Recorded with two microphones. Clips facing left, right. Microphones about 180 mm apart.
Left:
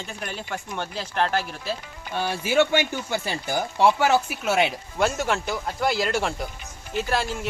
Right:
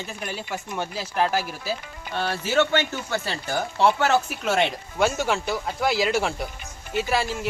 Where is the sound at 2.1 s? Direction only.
10° left (ahead or behind).